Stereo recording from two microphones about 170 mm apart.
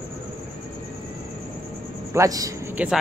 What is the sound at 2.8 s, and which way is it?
Speech, 10° right (ahead or behind).